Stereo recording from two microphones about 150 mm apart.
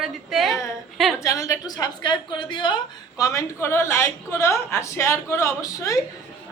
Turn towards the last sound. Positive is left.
turn(degrees=20)  # may be behind; listen again after turning